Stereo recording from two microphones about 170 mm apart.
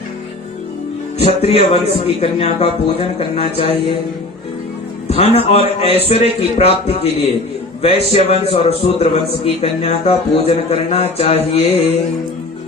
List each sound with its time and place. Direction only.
1.2 s a man's voice: 35° left (ahead or behind)
5.0 s a man's voice: 35° left (ahead or behind)